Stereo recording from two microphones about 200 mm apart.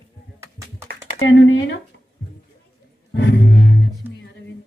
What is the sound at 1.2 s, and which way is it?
Speech, 70° left (ahead or behind).